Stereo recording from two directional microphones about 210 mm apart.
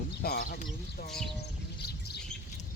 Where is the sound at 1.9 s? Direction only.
50° left (ahead or behind).